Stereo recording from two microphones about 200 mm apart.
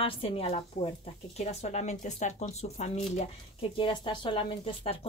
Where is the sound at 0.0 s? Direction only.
30° left (ahead or behind).